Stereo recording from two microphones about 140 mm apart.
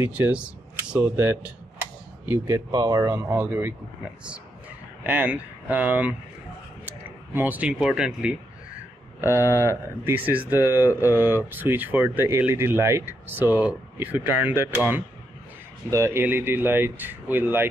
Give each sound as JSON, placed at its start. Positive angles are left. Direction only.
{"t": 0.0, "sound": "speech", "side_deg": -10}
{"t": 5.0, "sound": "speech", "side_deg": -10}
{"t": 7.3, "sound": "speech", "side_deg": -10}
{"t": 9.2, "sound": "speech", "side_deg": -15}
{"t": 15.9, "sound": "speech", "side_deg": -20}